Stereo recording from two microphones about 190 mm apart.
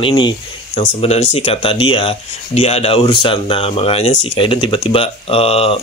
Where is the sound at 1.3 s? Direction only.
30° left (ahead or behind).